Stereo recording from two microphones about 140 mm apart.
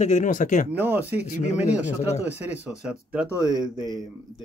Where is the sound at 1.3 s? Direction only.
55° left (ahead or behind).